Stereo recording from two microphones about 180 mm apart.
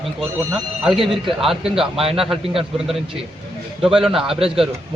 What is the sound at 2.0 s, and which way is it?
Speech, 30° right (ahead or behind).